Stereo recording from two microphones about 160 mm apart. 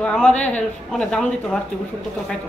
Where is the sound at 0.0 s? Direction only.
5° left (ahead or behind).